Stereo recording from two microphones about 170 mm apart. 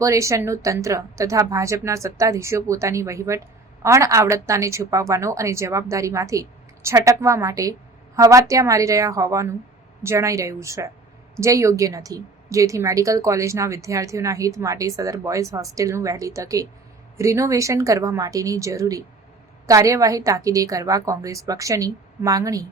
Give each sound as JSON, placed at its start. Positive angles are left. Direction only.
{"t": 0.0, "sound": "a woman's voice", "side_deg": -20}